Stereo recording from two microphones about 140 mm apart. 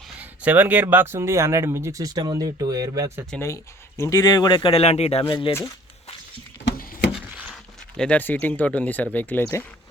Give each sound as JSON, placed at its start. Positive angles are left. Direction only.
{"t": 0.2, "sound": "speech", "side_deg": -10}
{"t": 3.4, "sound": "speech", "side_deg": 20}
{"t": 7.9, "sound": "speech", "side_deg": 10}